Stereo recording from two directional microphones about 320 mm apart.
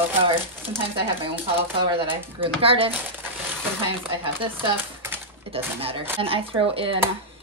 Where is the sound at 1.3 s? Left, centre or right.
Centre.